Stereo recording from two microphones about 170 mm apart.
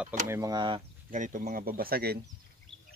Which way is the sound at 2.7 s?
35° left (ahead or behind).